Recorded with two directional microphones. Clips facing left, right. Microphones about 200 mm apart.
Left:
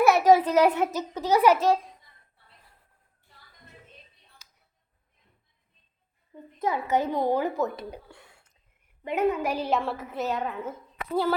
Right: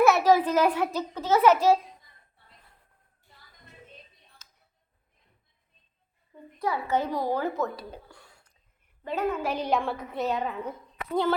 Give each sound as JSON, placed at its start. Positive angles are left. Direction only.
{"t": 0.0, "sound": "a child's voice", "side_deg": 15}
{"t": 1.5, "sound": "a woman's voice", "side_deg": -5}
{"t": 4.4, "sound": "tick-tock", "side_deg": 10}
{"t": 6.3, "sound": "speech", "side_deg": 20}
{"t": 8.0, "sound": "a sound", "side_deg": 25}
{"t": 9.0, "sound": "a woman's voice", "side_deg": 20}